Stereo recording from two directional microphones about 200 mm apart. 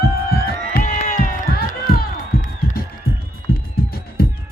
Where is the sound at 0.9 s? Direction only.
35° left (ahead or behind).